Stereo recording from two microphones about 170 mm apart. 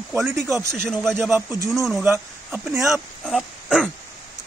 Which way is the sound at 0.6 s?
15° right (ahead or behind).